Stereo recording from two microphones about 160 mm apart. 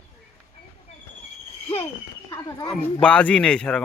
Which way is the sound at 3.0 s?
10° left (ahead or behind).